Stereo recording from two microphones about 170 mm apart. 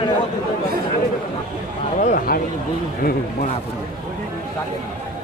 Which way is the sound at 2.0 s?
50° left (ahead or behind).